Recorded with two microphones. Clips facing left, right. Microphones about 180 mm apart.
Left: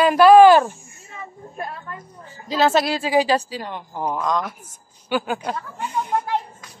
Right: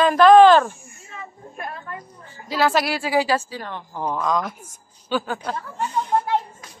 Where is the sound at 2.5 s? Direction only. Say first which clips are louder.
Left 2 dB; 25° left (ahead or behind).